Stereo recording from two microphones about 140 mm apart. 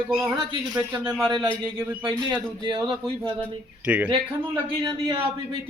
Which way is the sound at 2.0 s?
35° right (ahead or behind).